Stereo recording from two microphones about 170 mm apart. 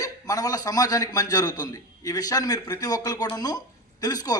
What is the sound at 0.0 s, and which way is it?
Speech, 20° left (ahead or behind).